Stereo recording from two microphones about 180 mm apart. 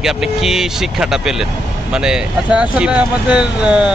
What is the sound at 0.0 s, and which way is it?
Speech, centre (ahead or behind).